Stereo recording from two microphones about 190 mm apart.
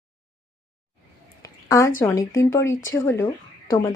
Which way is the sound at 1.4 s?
20° left (ahead or behind).